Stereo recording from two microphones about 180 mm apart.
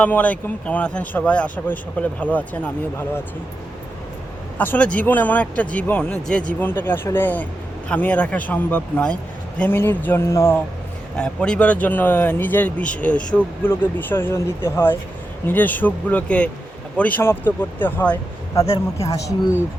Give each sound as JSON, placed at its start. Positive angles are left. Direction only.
{"t": 0.0, "sound": "speech", "side_deg": 10}
{"t": 4.5, "sound": "speech", "side_deg": 10}